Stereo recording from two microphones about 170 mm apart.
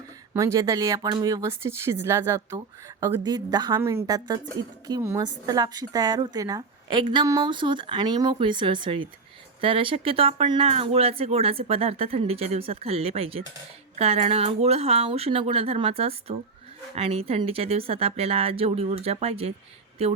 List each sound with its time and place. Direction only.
0.3 s speech: 20° right (ahead or behind); by 20.1 s 35° right (ahead or behind)